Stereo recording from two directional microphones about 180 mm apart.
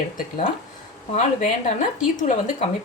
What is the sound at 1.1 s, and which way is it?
Speech, 45° left (ahead or behind).